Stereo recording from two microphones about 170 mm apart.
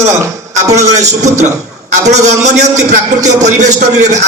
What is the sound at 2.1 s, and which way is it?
A man's voice, 40° right (ahead or behind).